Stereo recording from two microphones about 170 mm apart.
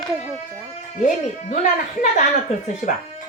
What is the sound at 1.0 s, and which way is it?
A woman's voice, 50° left (ahead or behind).